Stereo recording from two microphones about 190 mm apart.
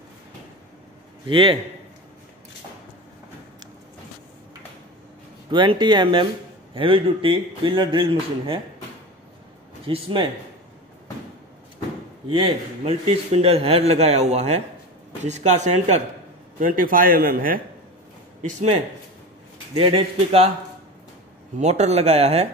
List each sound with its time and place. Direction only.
1.2 s a man's voice: 25° right (ahead or behind)
5.5 s a man's voice: 25° right (ahead or behind)
9.8 s a man's voice: 25° right (ahead or behind)
12.3 s a man's voice: 30° right (ahead or behind)
21.5 s a man's voice: 35° right (ahead or behind)